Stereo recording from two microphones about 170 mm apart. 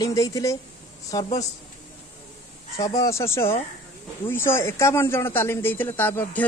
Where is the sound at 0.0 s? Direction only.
20° left (ahead or behind).